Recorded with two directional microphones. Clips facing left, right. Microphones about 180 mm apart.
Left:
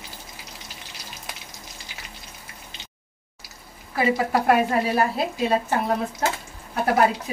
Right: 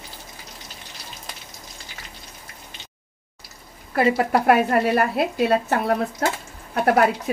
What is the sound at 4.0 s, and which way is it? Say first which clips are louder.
A woman's voice: right 3 dB; 60° right (ahead or behind).